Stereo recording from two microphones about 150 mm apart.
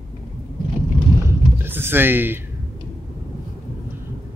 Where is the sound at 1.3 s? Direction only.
15° right (ahead or behind).